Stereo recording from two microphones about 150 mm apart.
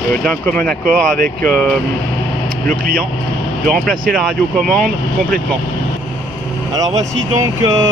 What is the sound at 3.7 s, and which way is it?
Speech, centre (ahead or behind).